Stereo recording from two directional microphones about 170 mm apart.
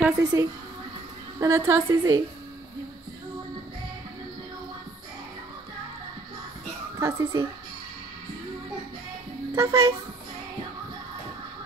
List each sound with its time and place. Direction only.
0.2 s a woman's voice: 20° right (ahead or behind)
7.0 s a woman's voice: 15° right (ahead or behind)
9.5 s speech: 15° right (ahead or behind)